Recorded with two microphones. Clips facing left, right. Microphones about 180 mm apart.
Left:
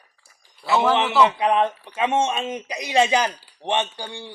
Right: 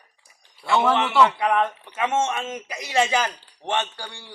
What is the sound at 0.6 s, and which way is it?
Speech, centre (ahead or behind).